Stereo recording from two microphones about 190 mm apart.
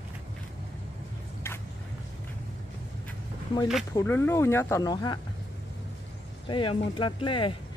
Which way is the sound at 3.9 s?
10° left (ahead or behind).